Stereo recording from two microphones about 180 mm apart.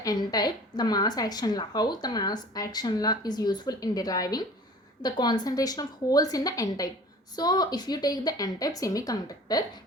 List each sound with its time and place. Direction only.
0.0 s a woman's voice: 20° left (ahead or behind)